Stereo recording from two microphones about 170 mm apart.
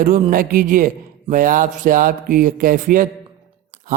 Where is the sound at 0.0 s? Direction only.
50° right (ahead or behind).